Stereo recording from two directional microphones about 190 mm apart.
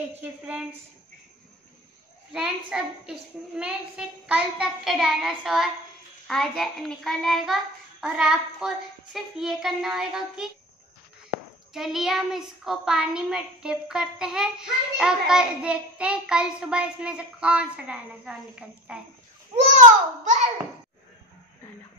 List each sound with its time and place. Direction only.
0.2 s a woman's voice: 5° right (ahead or behind)
2.3 s a woman's voice: 5° right (ahead or behind)
11.7 s a woman's voice: centre (ahead or behind)
19.5 s a child's voice: 35° right (ahead or behind)